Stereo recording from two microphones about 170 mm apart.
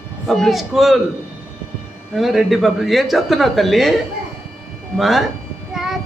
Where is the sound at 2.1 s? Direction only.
Centre (ahead or behind).